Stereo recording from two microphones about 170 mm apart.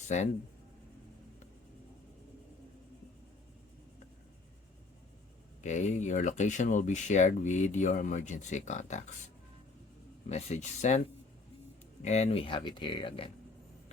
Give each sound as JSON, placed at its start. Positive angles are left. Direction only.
{"t": 5.6, "sound": "speech", "side_deg": 45}
{"t": 10.2, "sound": "speech", "side_deg": 40}
{"t": 12.0, "sound": "speech", "side_deg": 40}